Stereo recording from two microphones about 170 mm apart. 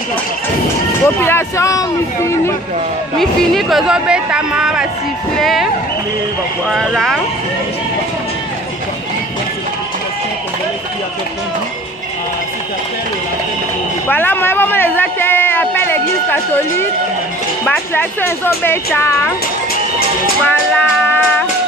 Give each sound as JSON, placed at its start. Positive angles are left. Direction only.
{"t": 1.0, "sound": "speech", "side_deg": 15}
{"t": 3.2, "sound": "speech", "side_deg": 0}
{"t": 6.7, "sound": "speech", "side_deg": 0}
{"t": 14.0, "sound": "a sound", "side_deg": 10}
{"t": 17.6, "sound": "speech", "side_deg": 10}
{"t": 20.4, "sound": "speech", "side_deg": 10}